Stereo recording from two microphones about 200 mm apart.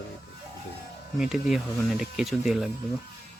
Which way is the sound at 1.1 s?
5° right (ahead or behind).